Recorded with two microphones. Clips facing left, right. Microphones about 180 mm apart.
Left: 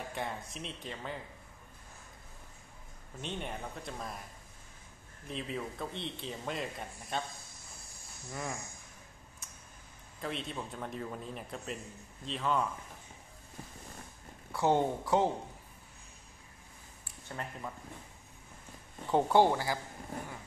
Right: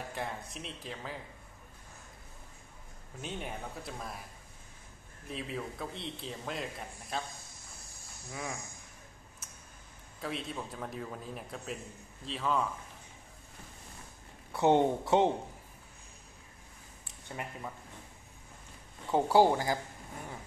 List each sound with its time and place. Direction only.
0.1 s a man's voice: centre (ahead or behind)
3.2 s a man's voice: 5° right (ahead or behind)
5.3 s a man's voice: centre (ahead or behind)
8.3 s a man's voice: centre (ahead or behind)
10.2 s a man's voice: centre (ahead or behind)
14.5 s speech: 20° right (ahead or behind)
17.4 s speech: 5° right (ahead or behind)
19.0 s a man's voice: 5° right (ahead or behind)
19.5 s speech: 20° right (ahead or behind)